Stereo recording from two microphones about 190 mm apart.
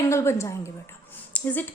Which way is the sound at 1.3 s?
10° left (ahead or behind).